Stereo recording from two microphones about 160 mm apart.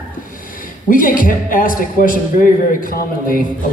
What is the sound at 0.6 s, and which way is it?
A man's voice, 60° left (ahead or behind).